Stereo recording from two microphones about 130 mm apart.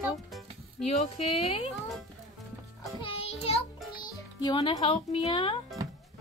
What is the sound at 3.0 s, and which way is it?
Music, 45° left (ahead or behind).